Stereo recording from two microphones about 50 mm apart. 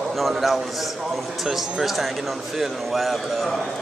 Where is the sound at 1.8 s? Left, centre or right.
Centre.